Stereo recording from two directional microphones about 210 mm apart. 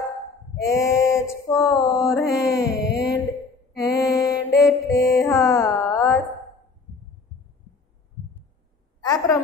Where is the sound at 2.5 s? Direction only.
55° left (ahead or behind).